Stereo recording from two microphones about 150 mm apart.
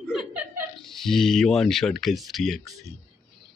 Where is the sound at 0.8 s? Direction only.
Centre (ahead or behind).